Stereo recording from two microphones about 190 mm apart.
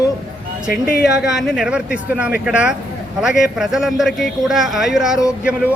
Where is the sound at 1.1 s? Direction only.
5° right (ahead or behind).